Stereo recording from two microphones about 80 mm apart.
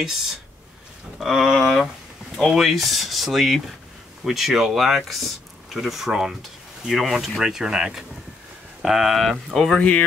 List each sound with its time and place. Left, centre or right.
1.2 s speech: centre